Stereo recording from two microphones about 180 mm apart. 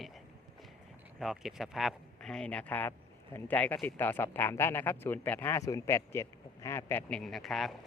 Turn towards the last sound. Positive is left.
turn(degrees=0)  # may be behind; listen again after turning